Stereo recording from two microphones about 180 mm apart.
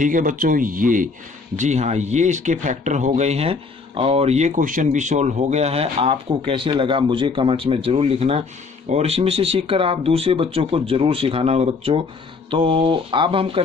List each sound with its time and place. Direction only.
0.0 s speech: 45° right (ahead or behind); by 13.6 s 30° right (ahead or behind)